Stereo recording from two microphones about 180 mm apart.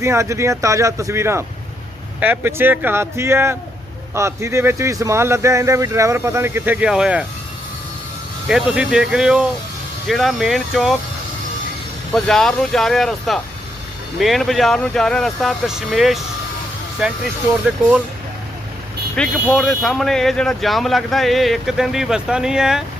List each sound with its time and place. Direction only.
0.0 s speech: 15° right (ahead or behind)
8.4 s speech: 5° right (ahead or behind)
12.1 s speech: centre (ahead or behind)
19.1 s speech: 5° left (ahead or behind)